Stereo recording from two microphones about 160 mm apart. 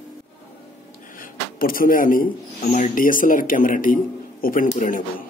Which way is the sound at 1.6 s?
60° left (ahead or behind).